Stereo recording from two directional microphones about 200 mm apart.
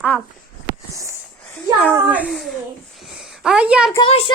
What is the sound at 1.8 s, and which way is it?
A child's voice, 5° left (ahead or behind).